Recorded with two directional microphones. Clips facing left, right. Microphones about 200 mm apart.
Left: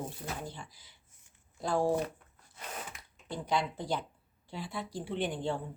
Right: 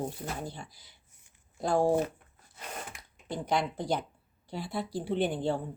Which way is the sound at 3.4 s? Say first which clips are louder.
Right 2 dB; 45° right (ahead or behind).